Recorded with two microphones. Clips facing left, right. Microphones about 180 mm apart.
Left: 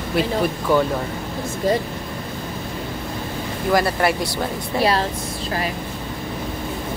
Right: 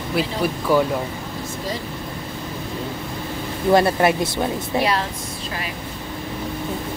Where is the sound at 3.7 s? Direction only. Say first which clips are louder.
Right 3 dB; 20° right (ahead or behind).